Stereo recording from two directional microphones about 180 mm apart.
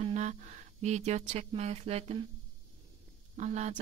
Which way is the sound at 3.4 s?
40° right (ahead or behind).